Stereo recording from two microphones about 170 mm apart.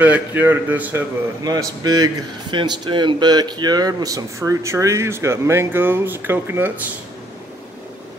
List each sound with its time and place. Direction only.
0.0 s speech: 10° right (ahead or behind)
1.4 s a man's voice: 20° right (ahead or behind)